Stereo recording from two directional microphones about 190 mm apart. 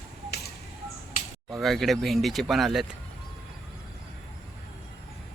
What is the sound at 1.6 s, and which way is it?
Speech, centre (ahead or behind).